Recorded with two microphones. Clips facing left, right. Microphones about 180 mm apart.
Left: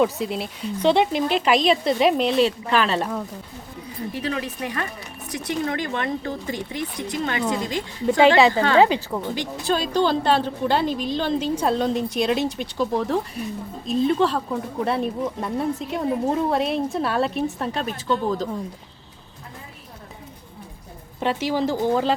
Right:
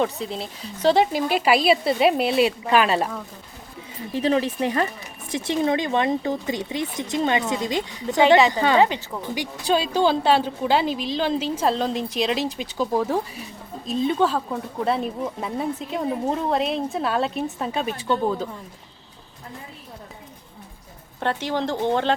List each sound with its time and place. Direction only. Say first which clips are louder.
0.0 s speech: left 3 dB; 5° left (ahead or behind)
4.1 s speech: right 8 dB; 30° right (ahead or behind)
8.8 s a woman's voice: left 2 dB; 15° left (ahead or behind)
9.9 s speech: even; 5° right (ahead or behind)
21.2 s a woman's voice: left 2 dB; 10° left (ahead or behind)